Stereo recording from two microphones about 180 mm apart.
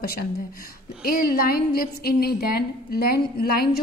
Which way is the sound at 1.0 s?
55° left (ahead or behind).